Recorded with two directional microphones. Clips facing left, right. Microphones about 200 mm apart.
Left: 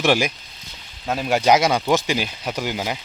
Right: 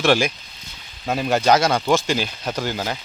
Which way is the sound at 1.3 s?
10° left (ahead or behind).